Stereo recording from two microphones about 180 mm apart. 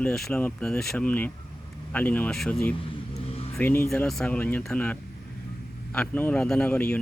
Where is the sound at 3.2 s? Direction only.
35° left (ahead or behind).